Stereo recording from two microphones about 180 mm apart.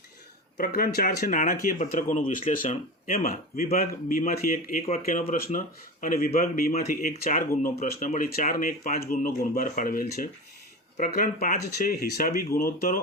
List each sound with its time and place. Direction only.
0.5 s speech: 50° left (ahead or behind)